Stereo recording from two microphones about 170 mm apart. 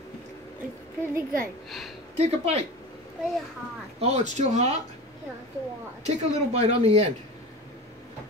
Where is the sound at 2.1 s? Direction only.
35° right (ahead or behind).